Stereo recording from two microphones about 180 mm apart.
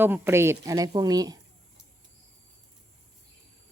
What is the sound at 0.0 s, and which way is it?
A woman's voice, 10° right (ahead or behind).